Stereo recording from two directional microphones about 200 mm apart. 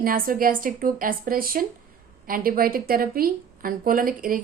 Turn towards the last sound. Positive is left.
turn(degrees=-45)  # may be behind; listen again after turning